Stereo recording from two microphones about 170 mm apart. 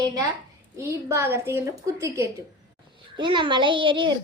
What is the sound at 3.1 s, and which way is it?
A child's voice, 30° right (ahead or behind).